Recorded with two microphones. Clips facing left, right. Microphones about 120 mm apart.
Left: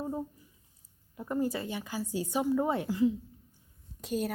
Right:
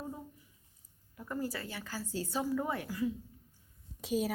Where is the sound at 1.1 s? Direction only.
20° left (ahead or behind).